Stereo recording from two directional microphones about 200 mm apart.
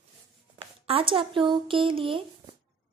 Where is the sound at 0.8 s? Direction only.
25° right (ahead or behind).